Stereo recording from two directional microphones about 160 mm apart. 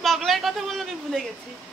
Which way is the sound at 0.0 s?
Centre (ahead or behind).